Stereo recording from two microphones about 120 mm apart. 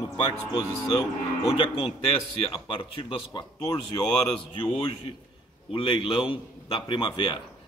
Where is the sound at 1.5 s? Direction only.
45° left (ahead or behind).